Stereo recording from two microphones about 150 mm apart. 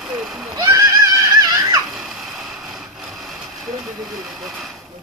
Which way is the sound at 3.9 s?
Centre (ahead or behind).